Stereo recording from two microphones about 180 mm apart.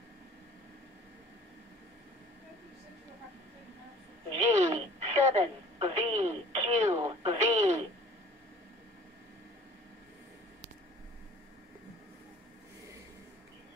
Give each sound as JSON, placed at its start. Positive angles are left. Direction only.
{"t": 4.4, "sound": "telephone", "side_deg": -40}
{"t": 7.0, "sound": "radio", "side_deg": -30}
{"t": 7.3, "sound": "radio", "side_deg": -40}